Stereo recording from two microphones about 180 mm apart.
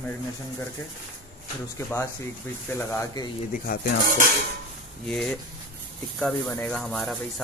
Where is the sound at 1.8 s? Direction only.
15° left (ahead or behind).